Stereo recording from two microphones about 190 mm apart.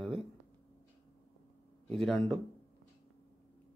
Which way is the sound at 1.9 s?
Centre (ahead or behind).